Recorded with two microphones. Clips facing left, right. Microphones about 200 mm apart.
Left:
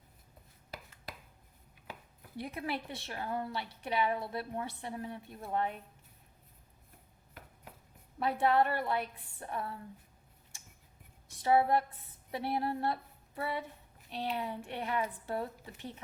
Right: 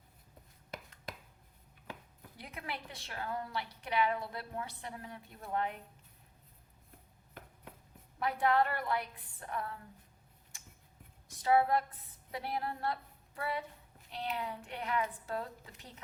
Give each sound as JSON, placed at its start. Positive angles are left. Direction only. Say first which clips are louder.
{"t": 2.4, "sound": "a woman's voice", "louder": "left 7 dB", "side_deg": 25}
{"t": 8.2, "sound": "a woman's voice", "louder": "left 2 dB", "side_deg": 25}
{"t": 11.4, "sound": "a woman's voice", "louder": "left 1 dB", "side_deg": 25}